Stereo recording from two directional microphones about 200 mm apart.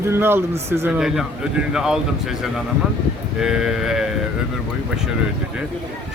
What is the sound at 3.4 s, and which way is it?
Speech, 5° right (ahead or behind).